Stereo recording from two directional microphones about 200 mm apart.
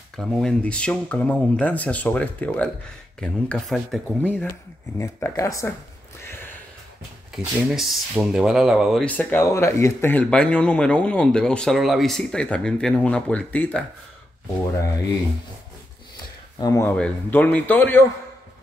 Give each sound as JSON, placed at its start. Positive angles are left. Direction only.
{"t": 0.1, "sound": "speech", "side_deg": 0}
{"t": 7.3, "sound": "speech", "side_deg": 0}
{"t": 16.5, "sound": "speech", "side_deg": 15}
{"t": 16.9, "sound": "speech", "side_deg": 5}